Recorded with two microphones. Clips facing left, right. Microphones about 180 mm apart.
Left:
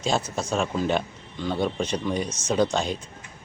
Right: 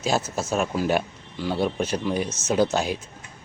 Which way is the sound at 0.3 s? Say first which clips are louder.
Right 1 dB; 5° right (ahead or behind).